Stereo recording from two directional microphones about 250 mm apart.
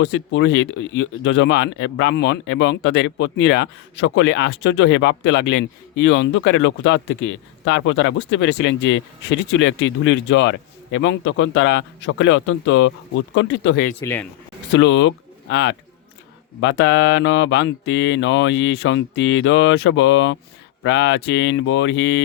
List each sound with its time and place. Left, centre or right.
0.0 s speech: left
14.0 s speech: centre
14.7 s speech: left